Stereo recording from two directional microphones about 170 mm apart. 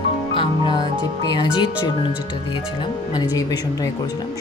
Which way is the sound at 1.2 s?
25° left (ahead or behind).